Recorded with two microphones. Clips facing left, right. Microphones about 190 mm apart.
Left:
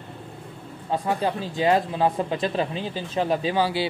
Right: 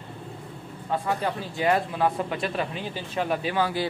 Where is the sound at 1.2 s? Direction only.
25° left (ahead or behind).